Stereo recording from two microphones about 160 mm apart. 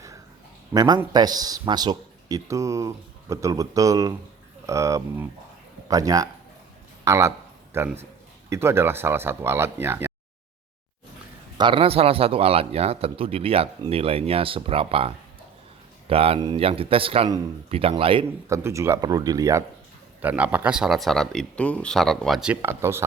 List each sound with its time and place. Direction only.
0.7 s a man's voice: 25° right (ahead or behind)
11.5 s a man's voice: 30° right (ahead or behind)
18.4 s speech: 20° right (ahead or behind)
20.2 s speech: 10° right (ahead or behind)
22.6 s speech: 15° right (ahead or behind)